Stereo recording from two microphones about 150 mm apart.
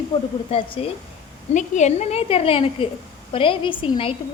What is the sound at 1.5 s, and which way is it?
A woman's voice, 50° left (ahead or behind).